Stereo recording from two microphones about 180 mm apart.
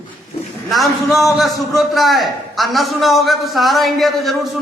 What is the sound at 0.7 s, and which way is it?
A man's voice, centre (ahead or behind).